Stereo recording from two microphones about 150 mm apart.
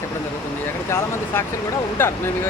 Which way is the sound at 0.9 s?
15° left (ahead or behind).